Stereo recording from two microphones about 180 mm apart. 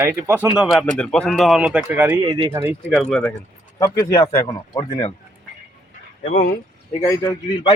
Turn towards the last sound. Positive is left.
turn(degrees=30)  # may be behind; listen again after turning